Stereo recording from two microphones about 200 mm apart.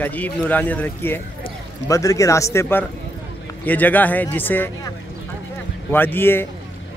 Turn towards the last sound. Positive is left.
turn(degrees=10)  # may be behind; listen again after turning